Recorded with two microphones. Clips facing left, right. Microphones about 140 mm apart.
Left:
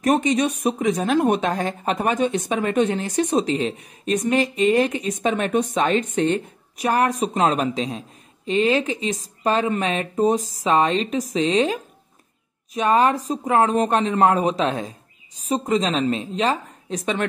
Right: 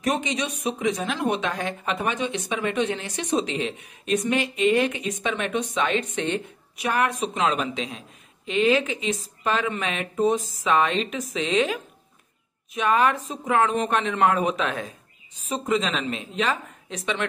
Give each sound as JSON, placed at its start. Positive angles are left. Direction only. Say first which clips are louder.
{"t": 0.0, "sound": "speech", "louder": "left 7 dB", "side_deg": 45}